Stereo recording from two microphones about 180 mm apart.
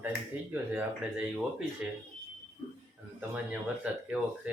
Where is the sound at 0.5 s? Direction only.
10° right (ahead or behind).